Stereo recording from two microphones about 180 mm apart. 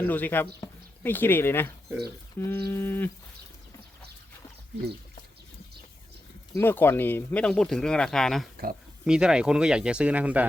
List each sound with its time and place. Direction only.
0.0 s speech: 10° left (ahead or behind)
2.4 s a sound: 10° left (ahead or behind)
6.5 s speech: 10° left (ahead or behind); by 10.4 s 10° right (ahead or behind)